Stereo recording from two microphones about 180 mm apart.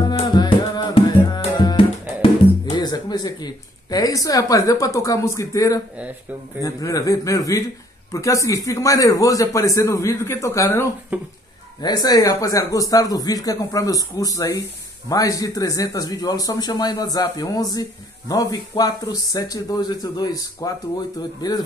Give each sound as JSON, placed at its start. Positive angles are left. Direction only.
{"t": 0.2, "sound": "tabla", "side_deg": 25}
{"t": 2.6, "sound": "a sound", "side_deg": 20}
{"t": 6.6, "sound": "a man's voice", "side_deg": 20}
{"t": 11.1, "sound": "speech", "side_deg": -10}
{"t": 11.8, "sound": "speech", "side_deg": 25}